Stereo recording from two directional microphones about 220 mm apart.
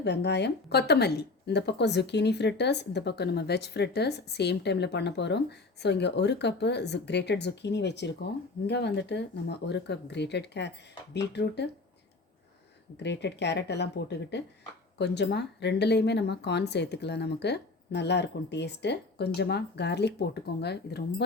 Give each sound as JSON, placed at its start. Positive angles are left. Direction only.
{"t": 0.0, "sound": "speech", "side_deg": 50}
{"t": 13.0, "sound": "speech", "side_deg": 50}